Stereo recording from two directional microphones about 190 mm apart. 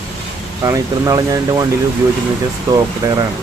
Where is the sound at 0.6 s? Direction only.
20° right (ahead or behind).